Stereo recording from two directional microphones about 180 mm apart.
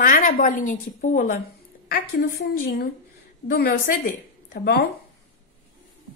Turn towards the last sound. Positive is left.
turn(degrees=60)  # may be behind; listen again after turning